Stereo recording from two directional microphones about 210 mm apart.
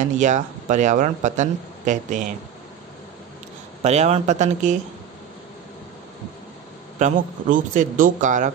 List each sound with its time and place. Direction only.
0.0 s speech: 35° right (ahead or behind)
3.8 s speech: 30° right (ahead or behind)
7.0 s speech: 35° right (ahead or behind)